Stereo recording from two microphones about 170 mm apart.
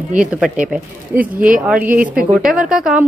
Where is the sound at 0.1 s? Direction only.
5° right (ahead or behind).